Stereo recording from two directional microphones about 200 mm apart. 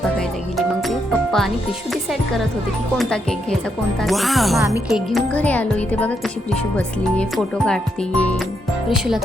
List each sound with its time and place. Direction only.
0.5 s speech: centre (ahead or behind)
4.0 s speech: centre (ahead or behind)